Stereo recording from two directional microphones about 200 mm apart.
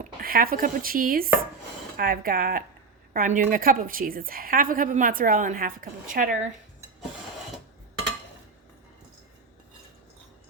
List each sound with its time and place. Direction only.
0.0 s a woman's voice: 45° right (ahead or behind)